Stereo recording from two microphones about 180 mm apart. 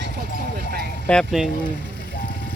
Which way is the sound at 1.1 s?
Centre (ahead or behind).